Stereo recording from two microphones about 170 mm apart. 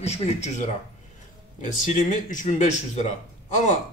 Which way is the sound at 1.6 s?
50° left (ahead or behind).